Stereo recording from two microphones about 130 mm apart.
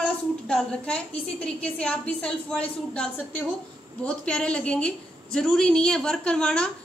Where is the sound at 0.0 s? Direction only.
5° left (ahead or behind).